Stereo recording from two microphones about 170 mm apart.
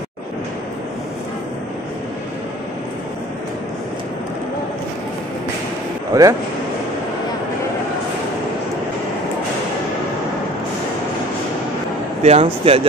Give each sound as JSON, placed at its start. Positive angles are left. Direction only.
{"t": 6.1, "sound": "speech", "side_deg": -20}
{"t": 12.2, "sound": "speech", "side_deg": -40}